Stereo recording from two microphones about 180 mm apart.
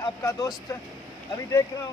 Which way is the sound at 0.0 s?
20° left (ahead or behind).